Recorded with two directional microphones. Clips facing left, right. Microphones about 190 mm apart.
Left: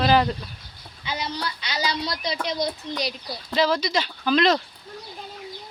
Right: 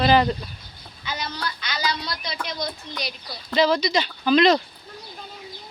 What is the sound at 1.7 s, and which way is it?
A woman's voice, 35° left (ahead or behind).